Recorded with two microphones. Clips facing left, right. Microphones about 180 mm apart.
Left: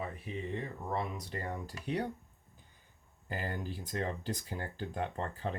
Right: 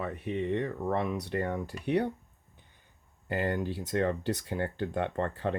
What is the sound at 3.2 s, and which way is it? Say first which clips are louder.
Speech: right 8 dB; 70° right (ahead or behind).